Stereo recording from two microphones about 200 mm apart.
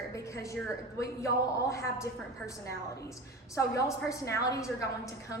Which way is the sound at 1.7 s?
15° left (ahead or behind).